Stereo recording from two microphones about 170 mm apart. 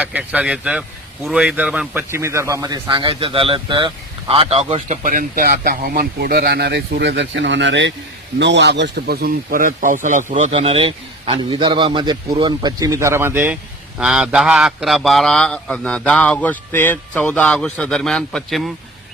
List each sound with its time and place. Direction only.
0.0 s a man's voice: 10° right (ahead or behind)